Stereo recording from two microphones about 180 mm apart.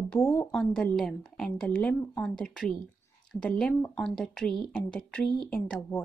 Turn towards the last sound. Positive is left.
turn(degrees=10)  # may be behind; listen again after turning